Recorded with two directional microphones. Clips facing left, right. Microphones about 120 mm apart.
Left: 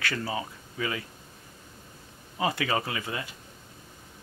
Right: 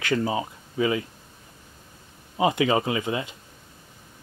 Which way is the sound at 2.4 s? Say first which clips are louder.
Right 6 dB; 20° right (ahead or behind).